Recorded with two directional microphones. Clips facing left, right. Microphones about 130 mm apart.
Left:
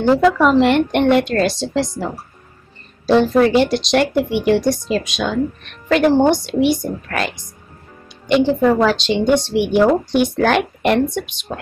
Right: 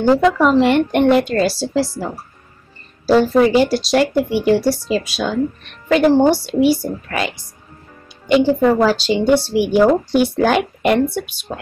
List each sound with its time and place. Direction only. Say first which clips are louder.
0.0 s a woman's voice: even; centre (ahead or behind)